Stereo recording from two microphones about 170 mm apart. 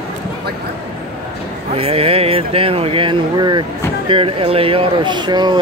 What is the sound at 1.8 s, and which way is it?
Speech, 35° right (ahead or behind).